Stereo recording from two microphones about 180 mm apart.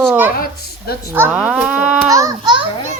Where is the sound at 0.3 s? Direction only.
55° left (ahead or behind).